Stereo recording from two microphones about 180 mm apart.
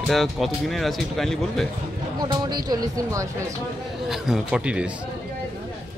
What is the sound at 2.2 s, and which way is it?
Speech, 25° right (ahead or behind).